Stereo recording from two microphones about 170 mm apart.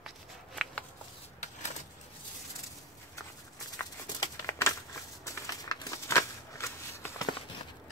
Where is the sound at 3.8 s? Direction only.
10° left (ahead or behind).